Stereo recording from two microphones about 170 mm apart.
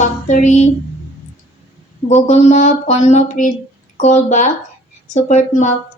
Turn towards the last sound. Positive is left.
turn(degrees=45)  # may be behind; listen again after turning